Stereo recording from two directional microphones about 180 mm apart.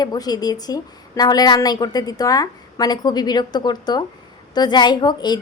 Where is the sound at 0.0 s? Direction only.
20° left (ahead or behind).